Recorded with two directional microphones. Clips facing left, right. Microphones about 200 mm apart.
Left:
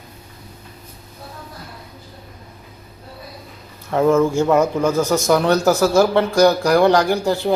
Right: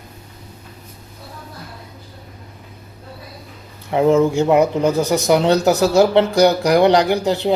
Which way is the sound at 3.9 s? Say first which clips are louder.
Right 1 dB; 15° right (ahead or behind).